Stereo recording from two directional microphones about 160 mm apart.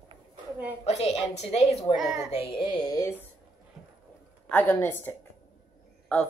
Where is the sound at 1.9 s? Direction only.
Centre (ahead or behind).